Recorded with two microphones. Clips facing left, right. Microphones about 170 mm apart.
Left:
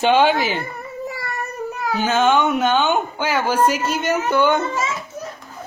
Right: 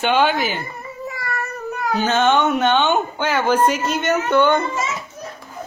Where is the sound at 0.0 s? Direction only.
30° left (ahead or behind).